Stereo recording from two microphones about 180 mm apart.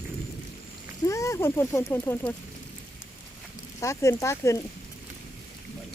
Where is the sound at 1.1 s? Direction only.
15° left (ahead or behind).